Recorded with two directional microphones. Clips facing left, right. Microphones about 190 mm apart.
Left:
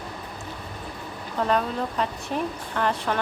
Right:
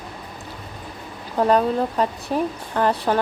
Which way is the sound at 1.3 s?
35° right (ahead or behind).